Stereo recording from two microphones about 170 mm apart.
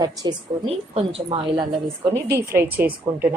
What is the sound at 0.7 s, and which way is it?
Speech, 35° right (ahead or behind).